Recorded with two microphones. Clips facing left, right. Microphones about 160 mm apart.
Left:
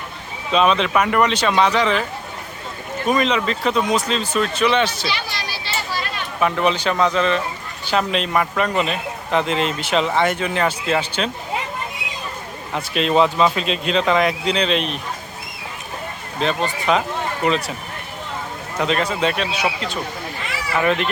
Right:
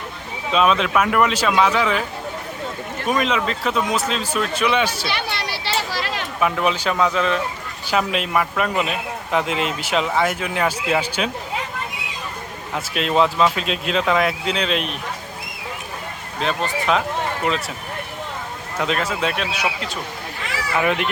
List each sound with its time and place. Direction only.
0.5 s a man's voice: centre (ahead or behind)
3.1 s a man's voice: 5° right (ahead or behind)
5.0 s a sound: 60° right (ahead or behind); by 6.2 s 90° right
6.4 s a man's voice: 5° right (ahead or behind)
12.7 s a man's voice: centre (ahead or behind)
16.4 s a man's voice: centre (ahead or behind)
18.8 s a man's voice: centre (ahead or behind)
20.7 s a child's voice: 10° right (ahead or behind)